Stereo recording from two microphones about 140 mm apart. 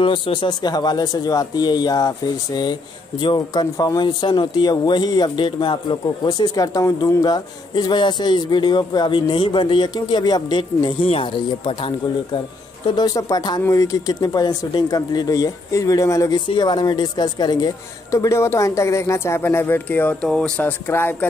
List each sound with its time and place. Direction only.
0.0 s a woman's voice: 35° left (ahead or behind); by 21.3 s 15° left (ahead or behind)